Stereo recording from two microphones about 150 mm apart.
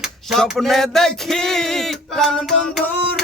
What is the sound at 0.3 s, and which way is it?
Music, centre (ahead or behind).